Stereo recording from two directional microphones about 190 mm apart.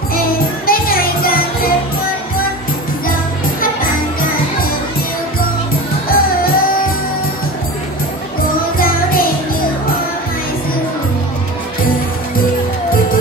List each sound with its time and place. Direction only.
0.7 s music: 50° left (ahead or behind)
6.0 s music: 50° left (ahead or behind)
8.7 s music: 50° left (ahead or behind)